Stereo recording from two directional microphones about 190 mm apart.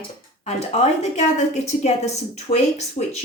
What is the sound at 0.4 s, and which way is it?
Speech, 35° left (ahead or behind).